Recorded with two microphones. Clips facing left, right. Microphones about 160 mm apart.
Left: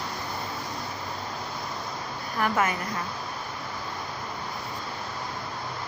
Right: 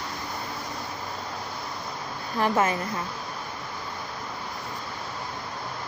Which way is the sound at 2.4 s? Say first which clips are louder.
Right 2 dB; 25° right (ahead or behind).